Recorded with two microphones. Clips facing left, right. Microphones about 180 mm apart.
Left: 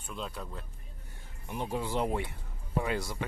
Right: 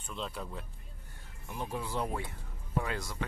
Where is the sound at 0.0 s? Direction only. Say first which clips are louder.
Even; centre (ahead or behind).